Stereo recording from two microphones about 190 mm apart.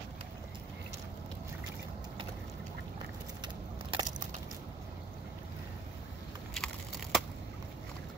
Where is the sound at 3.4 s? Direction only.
25° right (ahead or behind).